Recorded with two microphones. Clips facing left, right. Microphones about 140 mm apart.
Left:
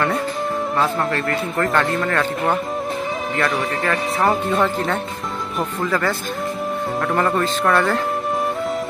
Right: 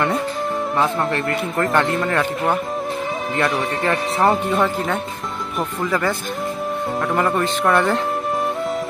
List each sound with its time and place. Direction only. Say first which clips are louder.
0.7 s speech: right 1 dB; 20° right (ahead or behind)
3.3 s speech: right 1 dB; 25° right (ahead or behind)
4.3 s speech: left 1 dB; 10° right (ahead or behind)
7.1 s speech: even; centre (ahead or behind)